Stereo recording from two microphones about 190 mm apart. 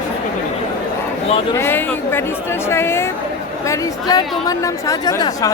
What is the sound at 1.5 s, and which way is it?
A woman's voice, 10° left (ahead or behind).